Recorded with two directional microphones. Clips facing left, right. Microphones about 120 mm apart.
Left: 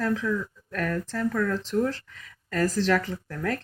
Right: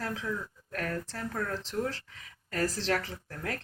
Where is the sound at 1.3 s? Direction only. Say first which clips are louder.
Left 7 dB; 75° left (ahead or behind).